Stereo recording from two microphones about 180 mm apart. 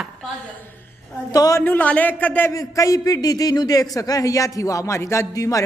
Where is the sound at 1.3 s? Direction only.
20° left (ahead or behind).